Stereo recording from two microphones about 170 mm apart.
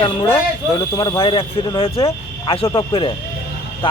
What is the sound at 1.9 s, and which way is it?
Speech, 35° left (ahead or behind).